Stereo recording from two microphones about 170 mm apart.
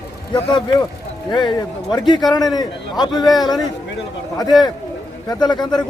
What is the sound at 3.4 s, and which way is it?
Speech, 25° left (ahead or behind).